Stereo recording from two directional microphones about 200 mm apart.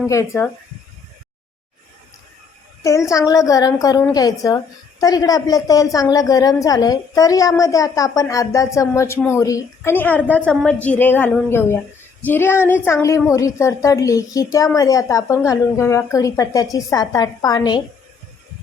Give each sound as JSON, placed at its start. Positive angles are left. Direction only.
{"t": 0.1, "sound": "a woman's voice", "side_deg": 15}
{"t": 2.8, "sound": "a woman's voice", "side_deg": 15}